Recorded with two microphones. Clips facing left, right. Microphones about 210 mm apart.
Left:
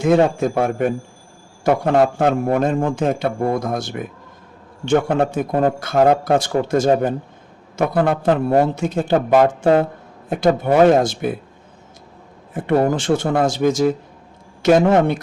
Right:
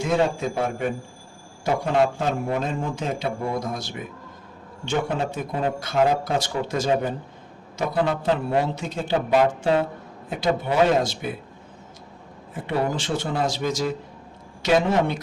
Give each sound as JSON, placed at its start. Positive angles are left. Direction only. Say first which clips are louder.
{"t": 0.0, "sound": "a man's voice", "louder": "left 7 dB", "side_deg": 50}
{"t": 7.8, "sound": "a man's voice", "louder": "left 6 dB", "side_deg": 60}
{"t": 12.6, "sound": "a man's voice", "louder": "left 8 dB", "side_deg": 50}